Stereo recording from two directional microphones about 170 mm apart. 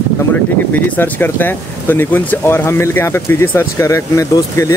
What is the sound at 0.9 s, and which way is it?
Speech, 10° left (ahead or behind).